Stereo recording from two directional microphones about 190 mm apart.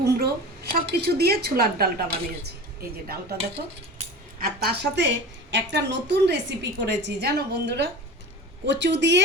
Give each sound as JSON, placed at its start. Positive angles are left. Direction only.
{"t": 0.0, "sound": "a woman's voice", "side_deg": -55}
{"t": 3.9, "sound": "speech", "side_deg": -50}